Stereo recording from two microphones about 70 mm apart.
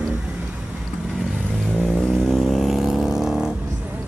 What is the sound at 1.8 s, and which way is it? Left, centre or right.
Vehicle, centre.